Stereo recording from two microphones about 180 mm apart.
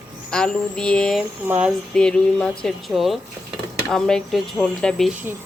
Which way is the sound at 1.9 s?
5° left (ahead or behind).